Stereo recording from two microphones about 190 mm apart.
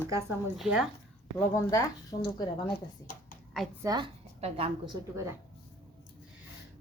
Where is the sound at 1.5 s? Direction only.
15° left (ahead or behind).